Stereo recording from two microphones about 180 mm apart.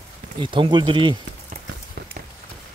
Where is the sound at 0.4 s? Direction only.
30° right (ahead or behind).